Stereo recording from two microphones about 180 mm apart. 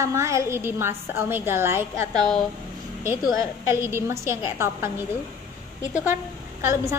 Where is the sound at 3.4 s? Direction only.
15° right (ahead or behind).